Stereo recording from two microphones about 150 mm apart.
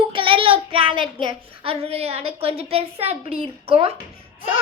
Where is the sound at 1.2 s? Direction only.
35° right (ahead or behind).